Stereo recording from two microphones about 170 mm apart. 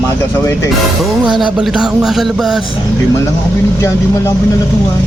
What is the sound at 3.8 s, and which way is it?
Speech, 15° left (ahead or behind).